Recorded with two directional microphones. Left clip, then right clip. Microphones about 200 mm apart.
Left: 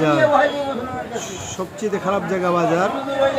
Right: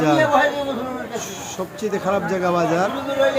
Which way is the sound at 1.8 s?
Centre (ahead or behind).